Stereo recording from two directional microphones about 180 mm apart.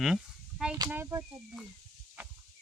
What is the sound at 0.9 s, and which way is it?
Speech, 15° right (ahead or behind).